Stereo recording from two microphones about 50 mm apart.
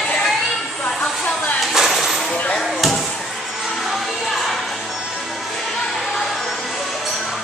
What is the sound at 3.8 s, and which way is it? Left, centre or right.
Music, centre.